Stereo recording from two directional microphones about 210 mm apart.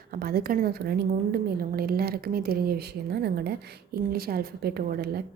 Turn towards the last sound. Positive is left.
turn(degrees=-45)  # may be behind; listen again after turning